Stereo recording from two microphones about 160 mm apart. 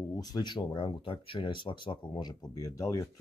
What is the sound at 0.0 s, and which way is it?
Speech, 20° left (ahead or behind).